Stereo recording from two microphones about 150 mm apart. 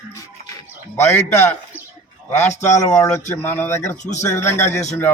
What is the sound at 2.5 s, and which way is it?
Speech, 50° left (ahead or behind).